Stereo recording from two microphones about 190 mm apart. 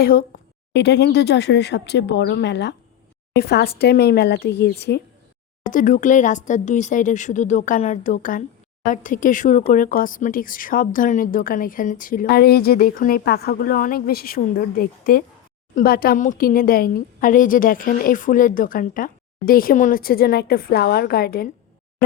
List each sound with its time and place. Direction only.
0.0 s speech: 50° left (ahead or behind)
0.7 s speech: 60° left (ahead or behind)
5.6 s speech: 45° left (ahead or behind)